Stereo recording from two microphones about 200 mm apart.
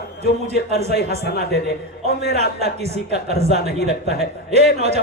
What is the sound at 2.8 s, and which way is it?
Speech, 30° right (ahead or behind).